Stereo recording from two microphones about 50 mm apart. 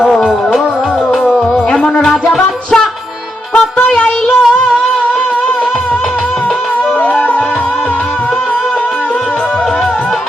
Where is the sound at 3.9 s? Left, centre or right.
Centre.